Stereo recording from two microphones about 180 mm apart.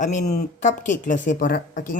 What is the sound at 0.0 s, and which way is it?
A man's voice, 45° left (ahead or behind).